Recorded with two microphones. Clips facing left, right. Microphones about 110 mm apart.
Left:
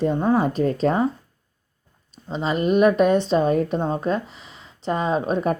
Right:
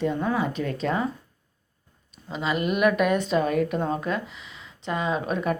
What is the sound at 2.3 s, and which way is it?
Speech, 35° left (ahead or behind).